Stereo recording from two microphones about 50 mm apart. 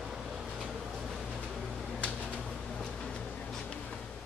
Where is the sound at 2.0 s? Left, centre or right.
Left.